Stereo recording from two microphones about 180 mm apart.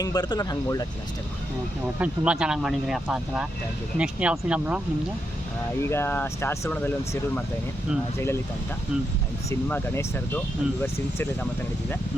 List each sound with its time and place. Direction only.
0.0 s speech: 20° left (ahead or behind)
2.0 s speech: 5° right (ahead or behind)
5.8 s speech: 15° left (ahead or behind)
9.5 s speech: 10° left (ahead or behind)